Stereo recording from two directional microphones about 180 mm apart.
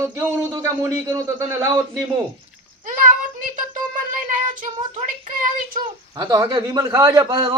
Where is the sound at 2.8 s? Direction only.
50° right (ahead or behind).